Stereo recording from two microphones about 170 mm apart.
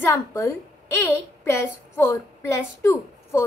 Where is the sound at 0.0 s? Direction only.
15° left (ahead or behind).